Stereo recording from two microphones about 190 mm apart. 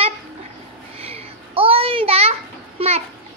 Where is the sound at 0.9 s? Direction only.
30° right (ahead or behind).